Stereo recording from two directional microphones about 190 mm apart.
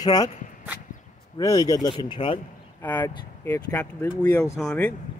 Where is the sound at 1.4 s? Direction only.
20° left (ahead or behind).